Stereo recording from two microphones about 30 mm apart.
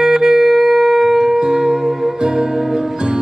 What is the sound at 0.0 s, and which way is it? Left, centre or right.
Music, centre.